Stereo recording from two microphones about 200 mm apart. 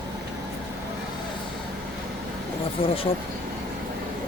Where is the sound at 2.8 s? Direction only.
25° left (ahead or behind).